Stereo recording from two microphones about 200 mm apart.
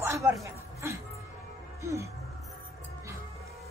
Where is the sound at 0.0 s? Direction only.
15° right (ahead or behind).